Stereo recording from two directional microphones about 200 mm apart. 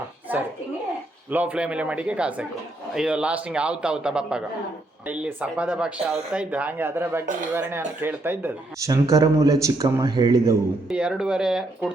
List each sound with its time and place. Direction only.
0.3 s a sound: 10° right (ahead or behind)
1.3 s a man's voice: 10° right (ahead or behind)
10.8 s a man's voice: 5° right (ahead or behind)